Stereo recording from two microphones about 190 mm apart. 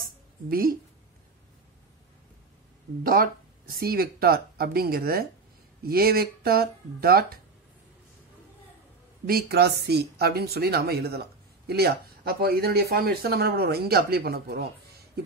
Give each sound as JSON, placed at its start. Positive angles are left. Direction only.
{"t": 0.5, "sound": "speech", "side_deg": -50}
{"t": 3.0, "sound": "speech", "side_deg": -50}
{"t": 9.2, "sound": "speech", "side_deg": -55}
{"t": 15.2, "sound": "a sound", "side_deg": -55}